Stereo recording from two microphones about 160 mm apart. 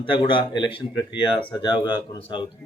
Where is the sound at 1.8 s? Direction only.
30° left (ahead or behind).